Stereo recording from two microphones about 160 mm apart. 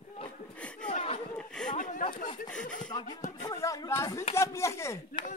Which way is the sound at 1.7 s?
60° left (ahead or behind).